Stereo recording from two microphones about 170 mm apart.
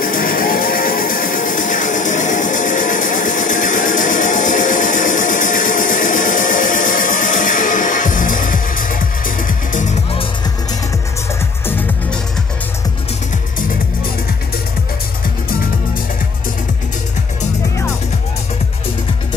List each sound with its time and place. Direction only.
0.0 s music: 55° left (ahead or behind)
11.6 s music: 10° left (ahead or behind)